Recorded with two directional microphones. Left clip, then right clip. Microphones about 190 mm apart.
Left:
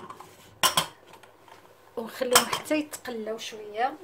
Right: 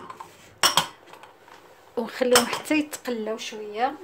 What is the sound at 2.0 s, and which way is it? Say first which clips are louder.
Speech: right 3 dB; 25° right (ahead or behind).